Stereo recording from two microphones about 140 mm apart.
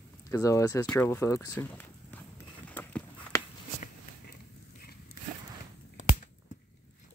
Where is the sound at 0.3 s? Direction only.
25° left (ahead or behind).